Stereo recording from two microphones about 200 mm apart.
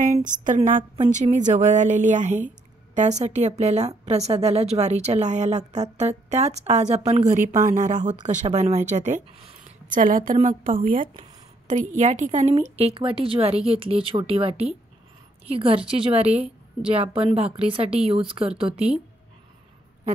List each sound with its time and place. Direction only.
0.2 s a woman's voice: 40° right (ahead or behind)
18.7 s speech: 5° right (ahead or behind)